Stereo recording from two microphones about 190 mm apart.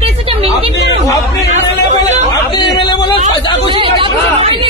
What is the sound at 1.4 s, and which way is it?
Chatter, 35° right (ahead or behind).